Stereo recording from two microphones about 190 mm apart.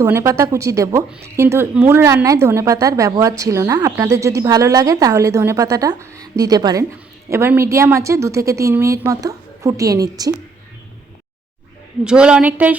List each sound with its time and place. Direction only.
0.0 s a woman's voice: 15° right (ahead or behind)
12.0 s a woman's voice: 5° right (ahead or behind)